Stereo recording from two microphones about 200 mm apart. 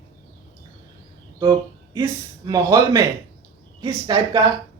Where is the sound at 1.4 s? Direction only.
15° right (ahead or behind).